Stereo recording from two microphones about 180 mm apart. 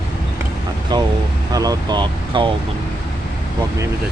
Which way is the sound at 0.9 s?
25° right (ahead or behind).